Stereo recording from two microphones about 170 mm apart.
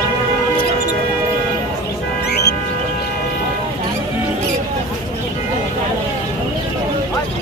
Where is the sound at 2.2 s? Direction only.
75° left (ahead or behind).